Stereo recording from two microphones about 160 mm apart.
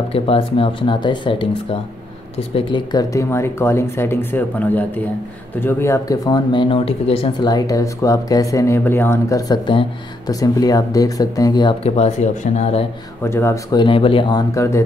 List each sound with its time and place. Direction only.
0.1 s speech: 35° left (ahead or behind)
7.4 s speech: 20° left (ahead or behind)
11.8 s speech: 45° left (ahead or behind)
13.2 s speech: 15° left (ahead or behind)
13.7 s speech: 35° left (ahead or behind)
14.5 s speech: 20° left (ahead or behind)